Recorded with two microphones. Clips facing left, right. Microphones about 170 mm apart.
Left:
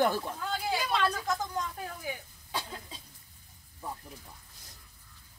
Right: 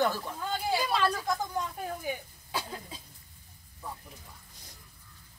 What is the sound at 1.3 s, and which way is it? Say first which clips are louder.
Speech: right 1 dB; 15° right (ahead or behind).